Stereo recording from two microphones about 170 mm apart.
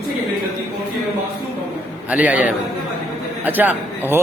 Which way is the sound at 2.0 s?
10° right (ahead or behind).